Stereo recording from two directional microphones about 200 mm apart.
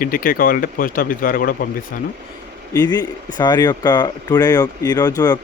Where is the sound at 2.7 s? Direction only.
20° left (ahead or behind).